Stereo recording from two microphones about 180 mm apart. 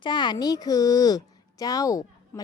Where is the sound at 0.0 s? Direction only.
25° left (ahead or behind).